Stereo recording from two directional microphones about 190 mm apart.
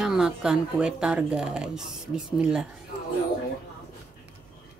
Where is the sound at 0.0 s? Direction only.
5° right (ahead or behind).